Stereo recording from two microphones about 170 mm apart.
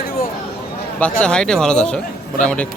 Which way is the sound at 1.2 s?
5° left (ahead or behind).